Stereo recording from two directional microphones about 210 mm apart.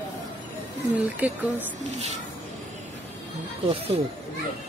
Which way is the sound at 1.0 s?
5° right (ahead or behind).